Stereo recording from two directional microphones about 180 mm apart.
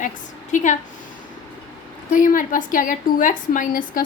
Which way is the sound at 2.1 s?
50° left (ahead or behind).